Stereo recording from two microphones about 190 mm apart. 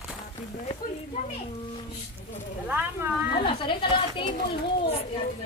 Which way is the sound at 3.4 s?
25° left (ahead or behind).